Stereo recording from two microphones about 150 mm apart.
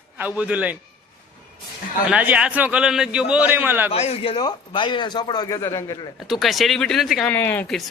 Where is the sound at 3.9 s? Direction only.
45° left (ahead or behind); by 5.9 s 20° left (ahead or behind).